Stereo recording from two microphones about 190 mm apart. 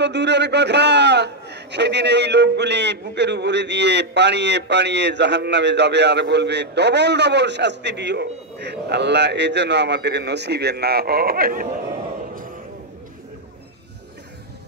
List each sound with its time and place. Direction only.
0.0 s a man's voice: 65° right (ahead or behind); by 11.7 s 50° right (ahead or behind)